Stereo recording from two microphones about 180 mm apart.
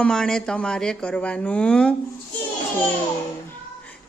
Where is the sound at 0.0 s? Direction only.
5° left (ahead or behind).